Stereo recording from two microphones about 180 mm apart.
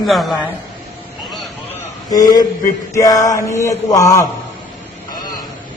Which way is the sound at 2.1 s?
20° left (ahead or behind).